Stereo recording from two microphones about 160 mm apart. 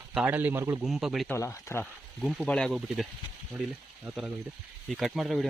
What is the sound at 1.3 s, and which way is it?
Speech, 15° left (ahead or behind).